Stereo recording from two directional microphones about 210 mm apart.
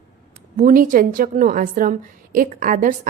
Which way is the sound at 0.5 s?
40° right (ahead or behind).